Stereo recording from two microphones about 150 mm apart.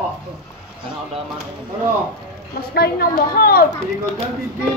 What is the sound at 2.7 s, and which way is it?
Speech, 85° left.